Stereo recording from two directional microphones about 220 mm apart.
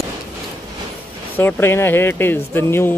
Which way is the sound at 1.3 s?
10° left (ahead or behind).